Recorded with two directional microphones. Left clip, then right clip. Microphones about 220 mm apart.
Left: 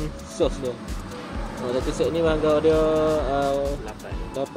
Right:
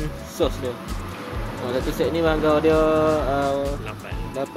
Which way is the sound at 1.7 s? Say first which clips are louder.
Right 1 dB; centre (ahead or behind).